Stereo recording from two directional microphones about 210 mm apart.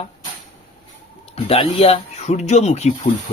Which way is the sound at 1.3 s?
25° left (ahead or behind).